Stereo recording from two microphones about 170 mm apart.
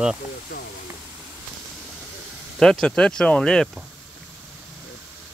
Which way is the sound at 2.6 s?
5° left (ahead or behind).